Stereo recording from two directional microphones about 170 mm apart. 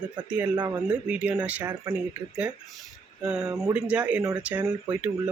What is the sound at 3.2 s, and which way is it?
Speech, 5° right (ahead or behind).